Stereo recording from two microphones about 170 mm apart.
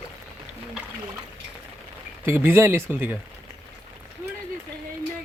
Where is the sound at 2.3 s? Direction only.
15° right (ahead or behind).